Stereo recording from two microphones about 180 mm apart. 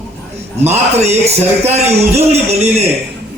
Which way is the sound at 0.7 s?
40° right (ahead or behind).